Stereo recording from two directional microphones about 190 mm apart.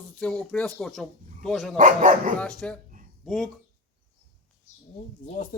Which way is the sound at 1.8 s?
40° right (ahead or behind).